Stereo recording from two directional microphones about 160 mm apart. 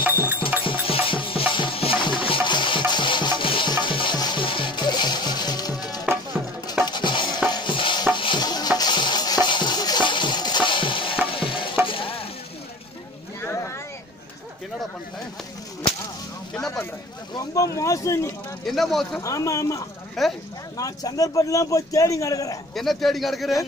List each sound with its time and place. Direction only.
0.0 s a sound: 10° right (ahead or behind)
0.7 s music: 35° left (ahead or behind)
6.9 s stir: 30° left (ahead or behind)
13.4 s a sound: 15° left (ahead or behind)
17.3 s vehicle: 20° left (ahead or behind)
17.7 s a sound: 20° left (ahead or behind)
18.7 s a man's voice: centre (ahead or behind)
19.2 s speech: 20° left (ahead or behind)
20.2 s a man's voice: centre (ahead or behind)
20.7 s speech: 20° left (ahead or behind)
22.8 s a man's voice: centre (ahead or behind)